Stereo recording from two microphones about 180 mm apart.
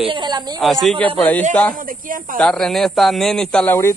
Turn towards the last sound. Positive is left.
turn(degrees=5)  # may be behind; listen again after turning